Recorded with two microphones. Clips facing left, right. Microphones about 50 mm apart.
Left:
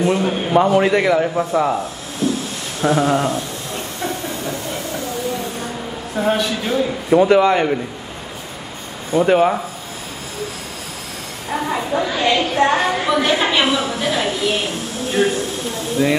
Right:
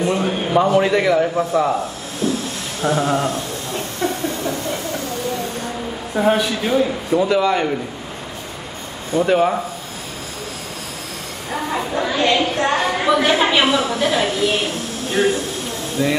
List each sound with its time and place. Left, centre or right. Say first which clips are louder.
0.0 s a man's voice: left 2 dB; centre
2.2 s a sound: left 1 dB; centre
2.8 s a man's voice: left 2 dB; centre
4.0 s a sound: right 3 dB; centre
6.1 s a man's voice: right 2 dB; centre
7.1 s a man's voice: left 7 dB; left
9.1 s speech: left 2 dB; centre
12.0 s a sound: right 2 dB; centre
15.0 s a man's voice: even; centre